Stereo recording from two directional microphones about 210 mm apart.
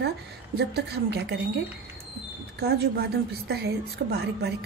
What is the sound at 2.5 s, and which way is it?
A woman's voice, 50° right (ahead or behind).